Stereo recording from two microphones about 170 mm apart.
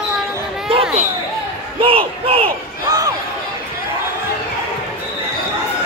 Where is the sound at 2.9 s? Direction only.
20° right (ahead or behind).